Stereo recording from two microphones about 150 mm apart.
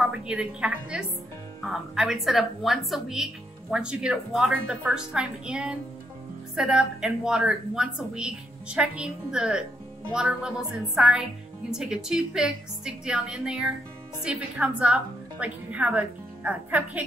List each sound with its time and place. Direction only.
0.0 s a woman's voice: 5° right (ahead or behind)